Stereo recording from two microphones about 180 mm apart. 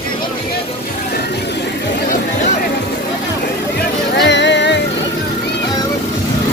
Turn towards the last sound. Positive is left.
turn(degrees=80)